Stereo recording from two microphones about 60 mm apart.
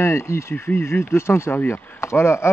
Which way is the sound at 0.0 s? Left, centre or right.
Left.